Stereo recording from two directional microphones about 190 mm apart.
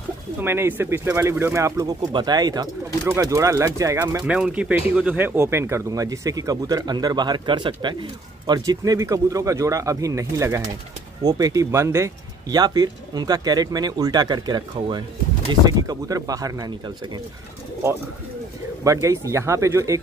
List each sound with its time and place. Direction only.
0.4 s speech: 10° right (ahead or behind)
18.9 s speech: 15° right (ahead or behind)